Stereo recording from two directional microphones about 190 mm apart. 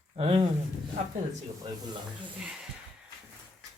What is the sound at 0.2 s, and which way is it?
Speech, 30° right (ahead or behind).